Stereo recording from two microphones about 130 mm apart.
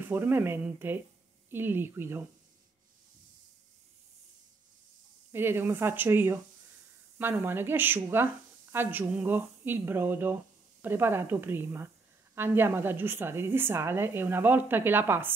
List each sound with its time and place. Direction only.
0.0 s speech: 15° right (ahead or behind)
5.3 s speech: 15° right (ahead or behind)